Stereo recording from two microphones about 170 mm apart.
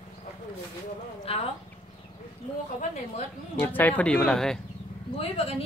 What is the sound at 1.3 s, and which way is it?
Speech, 35° left (ahead or behind).